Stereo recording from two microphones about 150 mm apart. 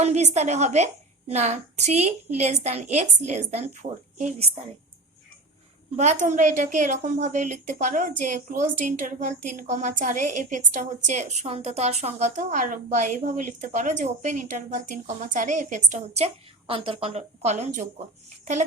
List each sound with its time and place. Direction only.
0.0 s a woman's voice: 50° right (ahead or behind)
6.0 s a woman's voice: 55° right (ahead or behind)